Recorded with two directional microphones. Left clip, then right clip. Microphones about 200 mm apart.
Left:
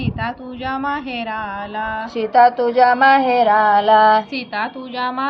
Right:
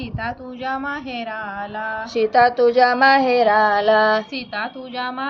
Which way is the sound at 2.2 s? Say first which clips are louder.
Left 2 dB; 25° right (ahead or behind).